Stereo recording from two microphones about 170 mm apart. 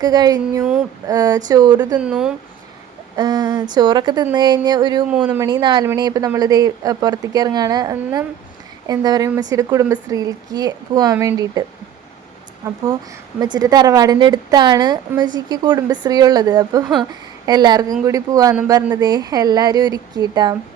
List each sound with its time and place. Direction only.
0.0 s a woman's voice: 25° right (ahead or behind)
2.0 s speech: 5° right (ahead or behind)
3.2 s a woman's voice: 25° right (ahead or behind)
5.0 s speech: 10° right (ahead or behind)
5.5 s a woman's voice: 30° right (ahead or behind)
12.6 s a woman's voice: 20° right (ahead or behind)